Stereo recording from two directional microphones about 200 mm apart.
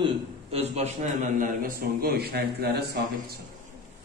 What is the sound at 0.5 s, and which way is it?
A man's voice, 35° right (ahead or behind).